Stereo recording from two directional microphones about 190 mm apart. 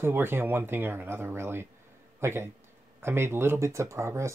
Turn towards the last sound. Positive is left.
turn(degrees=-15)  # may be behind; listen again after turning